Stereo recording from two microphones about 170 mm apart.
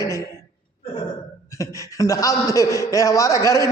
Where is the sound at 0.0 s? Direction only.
15° left (ahead or behind).